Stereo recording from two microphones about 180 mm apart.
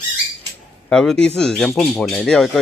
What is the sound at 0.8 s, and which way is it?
Speech, 5° left (ahead or behind).